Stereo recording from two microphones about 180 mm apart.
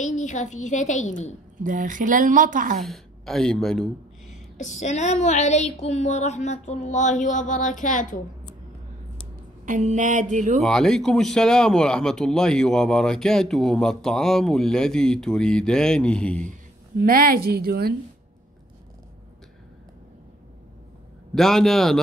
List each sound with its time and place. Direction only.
0.0 s a woman's voice: 40° left (ahead or behind)
1.6 s speech: 45° right (ahead or behind)
2.8 s speech: centre (ahead or behind)
4.3 s speech: 40° left (ahead or behind)
9.7 s speech: 45° right (ahead or behind)
10.6 s speech: centre (ahead or behind)
17.0 s a woman's voice: 55° right (ahead or behind)
21.4 s speech: centre (ahead or behind)